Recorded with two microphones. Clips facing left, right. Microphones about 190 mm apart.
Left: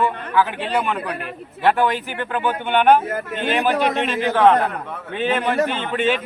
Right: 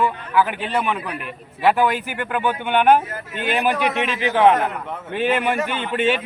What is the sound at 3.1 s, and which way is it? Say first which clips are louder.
A man's voice: left 3 dB; 50° left (ahead or behind).